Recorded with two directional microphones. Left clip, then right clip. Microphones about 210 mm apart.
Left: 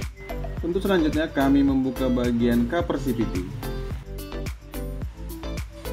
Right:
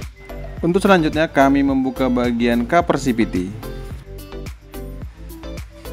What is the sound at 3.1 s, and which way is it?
Speech, centre (ahead or behind).